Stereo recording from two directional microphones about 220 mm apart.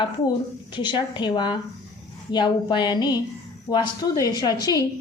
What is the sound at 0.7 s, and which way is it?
A woman's voice, 20° left (ahead or behind).